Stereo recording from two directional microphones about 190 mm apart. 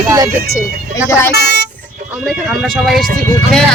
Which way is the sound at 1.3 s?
60° left (ahead or behind).